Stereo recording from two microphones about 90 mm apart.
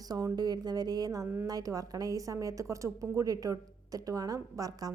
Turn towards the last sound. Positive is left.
turn(degrees=-40)  # may be behind; listen again after turning